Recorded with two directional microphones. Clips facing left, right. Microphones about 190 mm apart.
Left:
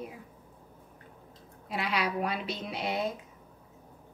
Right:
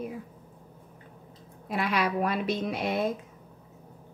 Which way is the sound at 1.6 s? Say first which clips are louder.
Right 4 dB; 50° right (ahead or behind).